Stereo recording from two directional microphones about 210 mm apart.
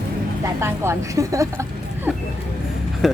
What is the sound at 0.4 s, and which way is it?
A woman's voice, 15° right (ahead or behind).